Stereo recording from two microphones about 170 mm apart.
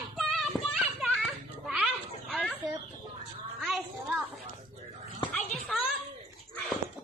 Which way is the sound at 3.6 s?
Centre (ahead or behind).